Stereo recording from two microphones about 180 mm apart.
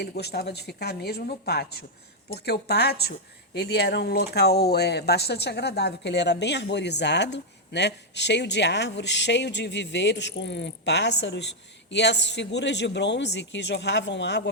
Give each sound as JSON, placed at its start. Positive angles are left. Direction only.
{"t": 0.0, "sound": "a woman's voice", "side_deg": 65}